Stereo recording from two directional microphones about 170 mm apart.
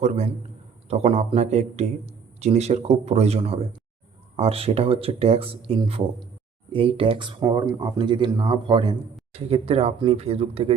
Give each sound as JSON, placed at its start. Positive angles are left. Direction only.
{"t": 0.9, "sound": "speech", "side_deg": -40}